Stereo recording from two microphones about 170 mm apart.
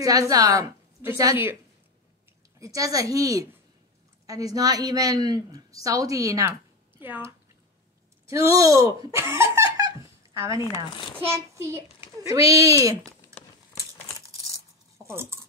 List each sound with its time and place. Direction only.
0.0 s a woman's voice: 20° right (ahead or behind)
2.6 s a woman's voice: 20° right (ahead or behind)
9.8 s a sound: 15° right (ahead or behind)
11.1 s a woman's voice: 15° right (ahead or behind)
15.0 s speech: 15° right (ahead or behind)